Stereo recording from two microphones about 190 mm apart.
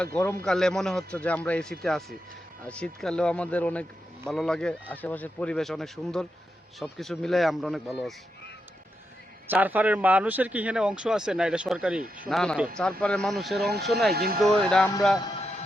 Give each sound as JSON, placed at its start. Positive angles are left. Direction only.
{"t": 0.0, "sound": "a man's voice", "side_deg": 5}
{"t": 9.5, "sound": "a man's voice", "side_deg": -10}
{"t": 14.1, "sound": "speech", "side_deg": -55}
{"t": 14.4, "sound": "speech", "side_deg": 0}
{"t": 15.2, "sound": "music", "side_deg": 35}